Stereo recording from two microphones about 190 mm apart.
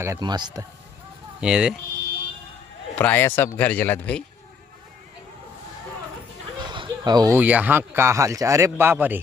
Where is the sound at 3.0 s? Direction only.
10° left (ahead or behind).